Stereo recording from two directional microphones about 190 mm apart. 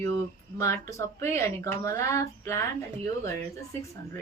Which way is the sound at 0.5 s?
15° left (ahead or behind).